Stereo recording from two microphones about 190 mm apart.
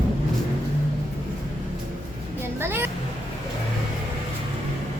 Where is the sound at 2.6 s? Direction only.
10° right (ahead or behind).